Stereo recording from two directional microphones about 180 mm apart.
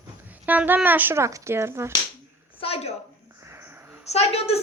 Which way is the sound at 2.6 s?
35° left (ahead or behind).